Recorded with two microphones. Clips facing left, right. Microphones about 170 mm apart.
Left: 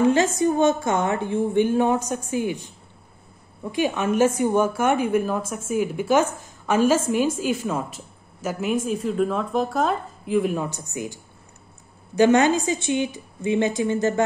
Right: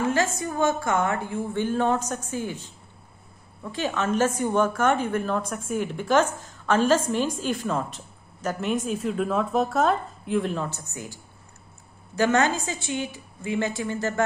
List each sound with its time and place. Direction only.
0.0 s a woman's voice: 20° left (ahead or behind)
3.7 s a woman's voice: 15° left (ahead or behind)
12.2 s a woman's voice: 15° left (ahead or behind)